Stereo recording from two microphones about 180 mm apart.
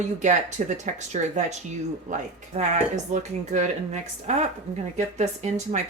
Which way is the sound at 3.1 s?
40° right (ahead or behind).